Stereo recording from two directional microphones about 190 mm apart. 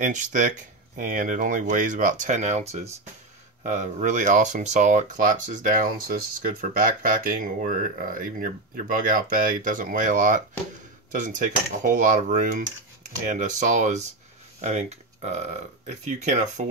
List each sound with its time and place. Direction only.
0.0 s speech: 40° right (ahead or behind)